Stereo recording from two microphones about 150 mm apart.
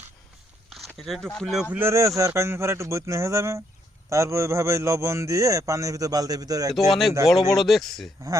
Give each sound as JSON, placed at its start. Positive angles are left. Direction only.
{"t": 0.9, "sound": "speech", "side_deg": 0}
{"t": 1.7, "sound": "speech", "side_deg": -15}
{"t": 6.7, "sound": "speech", "side_deg": 0}